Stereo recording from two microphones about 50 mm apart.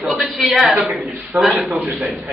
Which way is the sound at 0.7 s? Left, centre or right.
Right.